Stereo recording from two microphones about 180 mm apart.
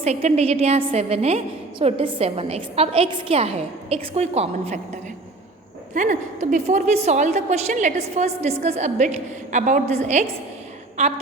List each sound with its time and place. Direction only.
0.0 s a woman's voice: 35° right (ahead or behind)
5.9 s a woman's voice: 45° right (ahead or behind)